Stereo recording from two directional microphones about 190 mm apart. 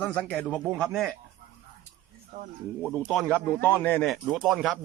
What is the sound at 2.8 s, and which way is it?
Speech, 5° left (ahead or behind).